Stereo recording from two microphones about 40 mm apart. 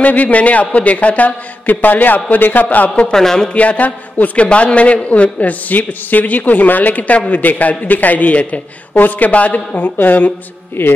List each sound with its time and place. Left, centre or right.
0.0 s a man's voice: left
3.1 s speech: centre
3.5 s a man's voice: left
4.5 s a man's voice: left
9.3 s a man's voice: left
9.8 s a man's voice: left